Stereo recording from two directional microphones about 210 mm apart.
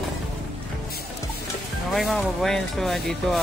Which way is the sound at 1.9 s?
Centre (ahead or behind).